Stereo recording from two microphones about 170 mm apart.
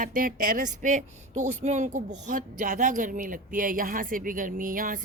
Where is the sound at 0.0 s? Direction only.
50° right (ahead or behind).